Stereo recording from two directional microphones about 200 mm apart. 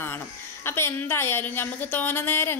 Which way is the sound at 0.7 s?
10° left (ahead or behind).